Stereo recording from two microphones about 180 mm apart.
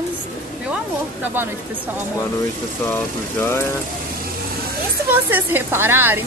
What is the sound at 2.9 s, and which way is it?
Speech, 15° left (ahead or behind).